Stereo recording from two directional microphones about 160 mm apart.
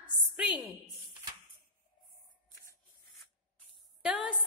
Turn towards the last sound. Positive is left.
turn(degrees=-5)  # may be behind; listen again after turning